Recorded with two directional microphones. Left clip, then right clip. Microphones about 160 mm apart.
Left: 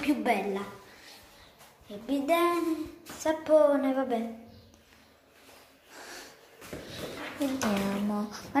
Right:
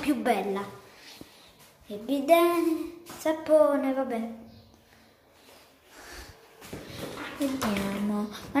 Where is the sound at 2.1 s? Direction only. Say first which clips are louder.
Right 4 dB; 20° right (ahead or behind); by 4.2 s centre (ahead or behind).